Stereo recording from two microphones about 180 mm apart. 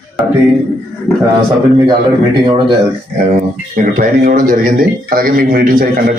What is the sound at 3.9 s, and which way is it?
A man's voice, 55° right (ahead or behind).